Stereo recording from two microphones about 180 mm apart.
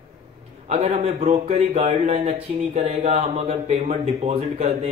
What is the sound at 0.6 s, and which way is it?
A man's voice, 35° right (ahead or behind).